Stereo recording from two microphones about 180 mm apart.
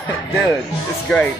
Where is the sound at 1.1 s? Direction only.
5° left (ahead or behind).